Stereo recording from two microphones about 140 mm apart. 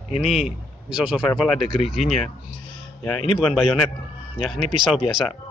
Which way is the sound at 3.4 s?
5° right (ahead or behind).